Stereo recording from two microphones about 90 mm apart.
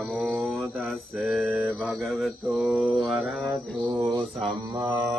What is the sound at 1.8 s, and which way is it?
Mantra, 5° right (ahead or behind).